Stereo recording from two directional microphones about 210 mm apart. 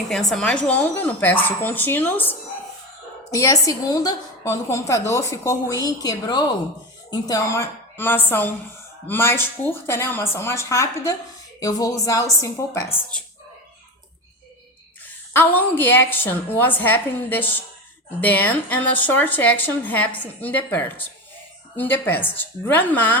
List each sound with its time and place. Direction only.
0.1 s a woman's voice: centre (ahead or behind)
3.3 s a woman's voice: 15° left (ahead or behind)
15.0 s a woman's voice: 10° left (ahead or behind)